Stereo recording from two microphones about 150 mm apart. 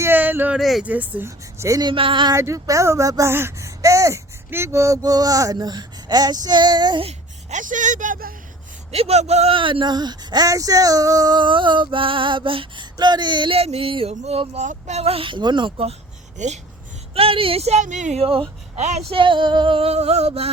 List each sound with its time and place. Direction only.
0.0 s a sound: 15° right (ahead or behind)
0.6 s speech: centre (ahead or behind)
0.9 s speech: 10° right (ahead or behind)
1.9 s speech: 35° right (ahead or behind)
2.3 s speech: 20° right (ahead or behind)
7.5 s speech: 60° right (ahead or behind)
8.9 s speech: 45° right (ahead or behind)
16.4 s speech: 50° right (ahead or behind)
17.2 s speech: 40° right (ahead or behind)
19.1 s speech: 35° right (ahead or behind)